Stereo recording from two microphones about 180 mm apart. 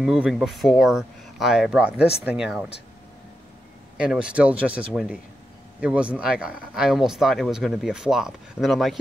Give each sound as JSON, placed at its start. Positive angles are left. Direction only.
{"t": 0.0, "sound": "speech", "side_deg": -5}
{"t": 4.0, "sound": "speech", "side_deg": -5}